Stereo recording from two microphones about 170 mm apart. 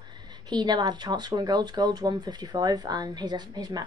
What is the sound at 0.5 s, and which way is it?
Speech, 25° right (ahead or behind).